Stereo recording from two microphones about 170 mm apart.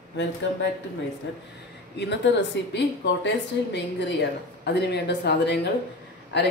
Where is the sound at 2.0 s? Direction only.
90° left.